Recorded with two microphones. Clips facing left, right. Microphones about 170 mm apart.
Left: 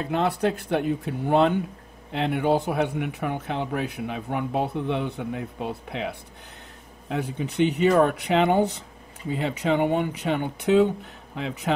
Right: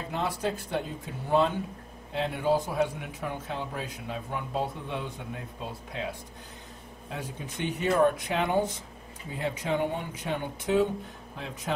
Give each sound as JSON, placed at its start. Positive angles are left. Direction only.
{"t": 0.1, "sound": "a man's voice", "side_deg": 65}